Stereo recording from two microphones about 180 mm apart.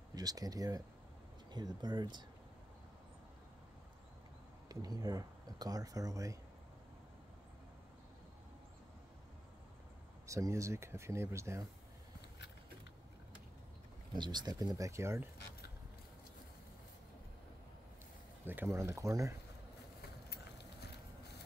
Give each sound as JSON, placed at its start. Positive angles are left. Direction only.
{"t": 0.1, "sound": "speech", "side_deg": -20}
{"t": 4.6, "sound": "speech", "side_deg": -20}
{"t": 10.2, "sound": "speech", "side_deg": -15}
{"t": 14.1, "sound": "speech", "side_deg": -25}
{"t": 18.4, "sound": "speech", "side_deg": -10}
{"t": 20.2, "sound": "a sound", "side_deg": 65}